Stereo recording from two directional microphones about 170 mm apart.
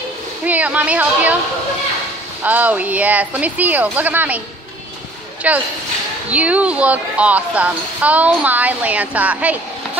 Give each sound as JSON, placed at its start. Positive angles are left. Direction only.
{"t": 0.5, "sound": "a woman's voice", "side_deg": -10}
{"t": 2.4, "sound": "a woman's voice", "side_deg": -10}
{"t": 5.4, "sound": "a woman's voice", "side_deg": -10}